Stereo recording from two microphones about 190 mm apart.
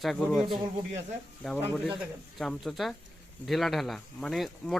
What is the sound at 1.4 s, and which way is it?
Speech, centre (ahead or behind).